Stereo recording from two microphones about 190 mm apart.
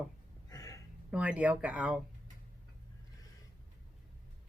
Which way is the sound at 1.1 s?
5° right (ahead or behind).